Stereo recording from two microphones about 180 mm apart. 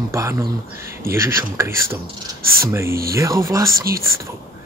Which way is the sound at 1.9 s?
55° right (ahead or behind).